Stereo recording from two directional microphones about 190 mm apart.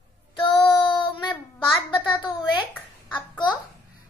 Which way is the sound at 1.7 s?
25° left (ahead or behind).